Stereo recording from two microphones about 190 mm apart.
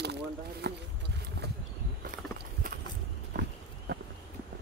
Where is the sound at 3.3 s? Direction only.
60° right (ahead or behind).